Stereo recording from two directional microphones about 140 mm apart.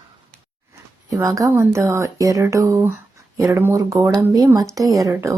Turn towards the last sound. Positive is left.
turn(degrees=-20)  # may be behind; listen again after turning